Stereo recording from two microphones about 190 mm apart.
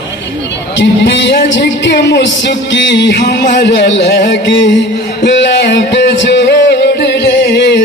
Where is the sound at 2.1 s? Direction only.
70° left (ahead or behind).